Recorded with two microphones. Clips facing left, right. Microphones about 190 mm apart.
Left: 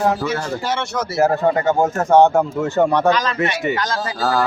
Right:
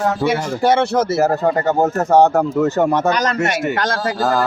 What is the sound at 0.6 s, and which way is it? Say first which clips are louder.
Speech: right 9 dB; 60° right (ahead or behind).